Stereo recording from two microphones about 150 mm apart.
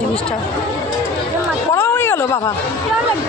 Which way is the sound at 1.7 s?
15° left (ahead or behind).